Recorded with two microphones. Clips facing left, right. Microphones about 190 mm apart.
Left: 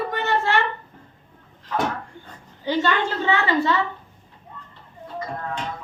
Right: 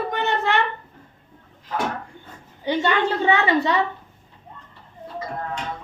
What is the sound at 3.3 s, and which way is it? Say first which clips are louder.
Speech: even; 20° right (ahead or behind).